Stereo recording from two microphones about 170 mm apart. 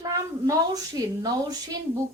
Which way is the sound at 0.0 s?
20° right (ahead or behind).